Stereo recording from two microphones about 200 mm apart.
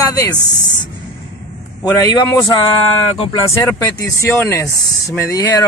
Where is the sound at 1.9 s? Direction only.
20° left (ahead or behind).